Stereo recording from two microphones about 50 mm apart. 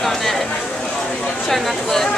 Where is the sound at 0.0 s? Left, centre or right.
Centre.